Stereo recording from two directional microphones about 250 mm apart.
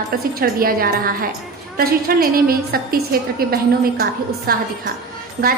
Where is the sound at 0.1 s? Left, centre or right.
Right.